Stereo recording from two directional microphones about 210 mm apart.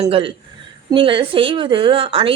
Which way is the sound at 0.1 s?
25° right (ahead or behind).